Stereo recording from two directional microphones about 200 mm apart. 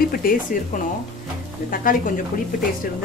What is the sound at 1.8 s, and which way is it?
Speech, 45° left (ahead or behind).